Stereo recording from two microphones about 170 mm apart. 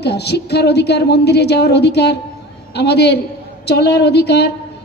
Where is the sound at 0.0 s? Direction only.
75° left (ahead or behind).